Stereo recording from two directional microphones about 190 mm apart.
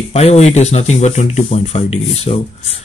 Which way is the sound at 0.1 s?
35° left (ahead or behind).